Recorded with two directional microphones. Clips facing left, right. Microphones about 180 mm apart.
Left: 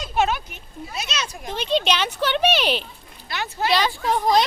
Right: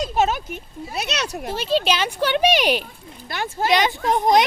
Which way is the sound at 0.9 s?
65° right (ahead or behind).